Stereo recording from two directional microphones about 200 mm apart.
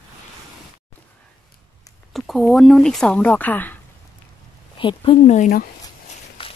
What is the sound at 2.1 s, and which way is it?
Speech, centre (ahead or behind).